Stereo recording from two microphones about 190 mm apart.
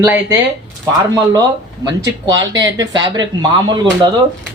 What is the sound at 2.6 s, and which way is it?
Speech, 20° right (ahead or behind).